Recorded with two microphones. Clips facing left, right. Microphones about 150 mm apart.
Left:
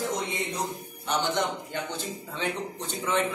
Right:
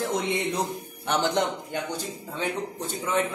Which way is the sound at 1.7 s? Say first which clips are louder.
Right 2 dB; 10° right (ahead or behind).